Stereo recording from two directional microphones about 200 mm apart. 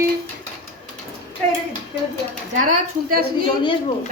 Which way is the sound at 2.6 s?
40° right (ahead or behind).